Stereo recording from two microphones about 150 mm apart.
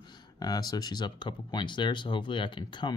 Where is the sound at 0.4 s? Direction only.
25° left (ahead or behind).